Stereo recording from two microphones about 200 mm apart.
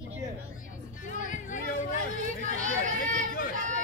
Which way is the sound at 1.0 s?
40° left (ahead or behind).